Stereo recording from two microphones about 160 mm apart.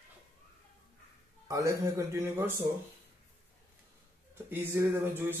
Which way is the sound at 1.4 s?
20° right (ahead or behind).